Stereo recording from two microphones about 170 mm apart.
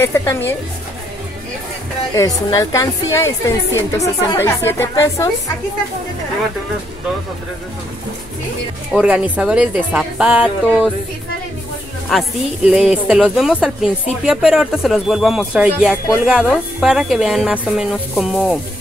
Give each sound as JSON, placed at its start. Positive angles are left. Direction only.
{"t": 0.0, "sound": "a woman's voice", "side_deg": 15}
{"t": 2.1, "sound": "a woman's voice", "side_deg": 20}
{"t": 8.9, "sound": "speech", "side_deg": -5}
{"t": 12.1, "sound": "speech", "side_deg": 0}